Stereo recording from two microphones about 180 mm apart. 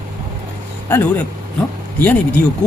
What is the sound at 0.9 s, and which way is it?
Speech, 10° left (ahead or behind).